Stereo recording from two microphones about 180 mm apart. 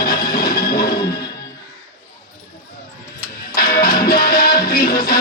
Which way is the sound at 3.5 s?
55° left (ahead or behind).